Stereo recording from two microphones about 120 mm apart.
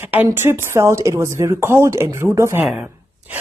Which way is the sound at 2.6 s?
5° right (ahead or behind).